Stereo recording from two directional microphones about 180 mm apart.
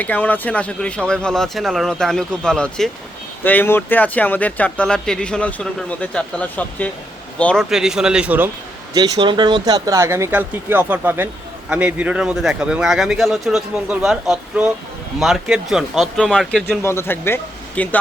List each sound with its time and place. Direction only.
0.0 s a man's voice: 10° left (ahead or behind); by 8.4 s 5° right (ahead or behind)
8.9 s a man's voice: 20° right (ahead or behind); by 18.0 s 10° left (ahead or behind)